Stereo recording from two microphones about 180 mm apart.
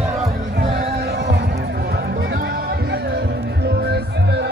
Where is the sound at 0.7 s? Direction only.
60° right (ahead or behind).